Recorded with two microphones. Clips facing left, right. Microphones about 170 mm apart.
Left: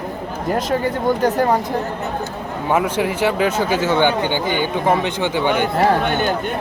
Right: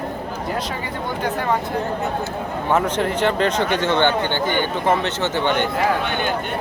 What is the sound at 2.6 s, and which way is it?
Speech, 10° left (ahead or behind).